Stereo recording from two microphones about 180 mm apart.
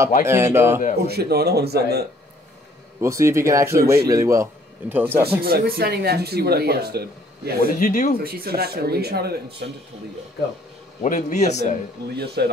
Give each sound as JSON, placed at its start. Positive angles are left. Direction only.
{"t": 0.2, "sound": "speech", "side_deg": -15}
{"t": 1.0, "sound": "speech", "side_deg": -60}
{"t": 3.0, "sound": "speech", "side_deg": -15}
{"t": 5.4, "sound": "speech", "side_deg": -55}
{"t": 7.6, "sound": "speech", "side_deg": 45}
{"t": 8.2, "sound": "speech", "side_deg": -55}
{"t": 11.0, "sound": "a man's voice", "side_deg": 40}
{"t": 12.4, "sound": "speech", "side_deg": -65}